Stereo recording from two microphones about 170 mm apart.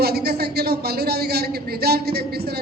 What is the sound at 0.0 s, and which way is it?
A man's voice, 70° right (ahead or behind).